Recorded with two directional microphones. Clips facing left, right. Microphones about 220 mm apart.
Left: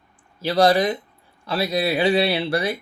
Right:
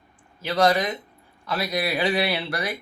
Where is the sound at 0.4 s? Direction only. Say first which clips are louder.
Left 4 dB; 35° left (ahead or behind).